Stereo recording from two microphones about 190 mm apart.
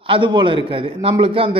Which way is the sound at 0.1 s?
25° right (ahead or behind).